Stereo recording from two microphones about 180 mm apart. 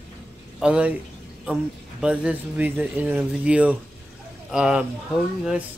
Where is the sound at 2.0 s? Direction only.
5° right (ahead or behind).